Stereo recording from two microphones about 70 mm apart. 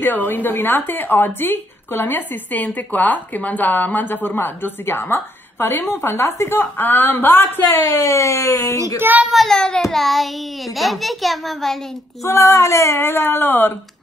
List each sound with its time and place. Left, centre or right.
0.0 s a woman's voice: left
7.9 s speech: left
9.0 s a child's voice: right
9.3 s child singing: centre
12.3 s a woman's voice: left